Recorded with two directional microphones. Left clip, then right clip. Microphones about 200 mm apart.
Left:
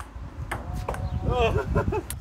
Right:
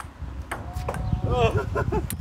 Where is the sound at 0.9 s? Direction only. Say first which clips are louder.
Right 1 dB; 10° left (ahead or behind).